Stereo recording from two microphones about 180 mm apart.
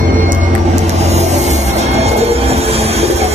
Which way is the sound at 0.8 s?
35° right (ahead or behind).